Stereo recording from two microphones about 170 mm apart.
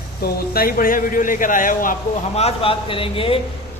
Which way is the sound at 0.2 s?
65° left (ahead or behind).